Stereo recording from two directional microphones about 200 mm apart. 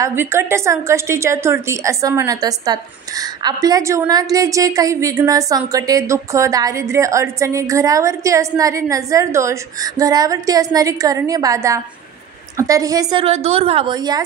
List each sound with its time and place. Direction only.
0.0 s a woman's voice: 10° right (ahead or behind)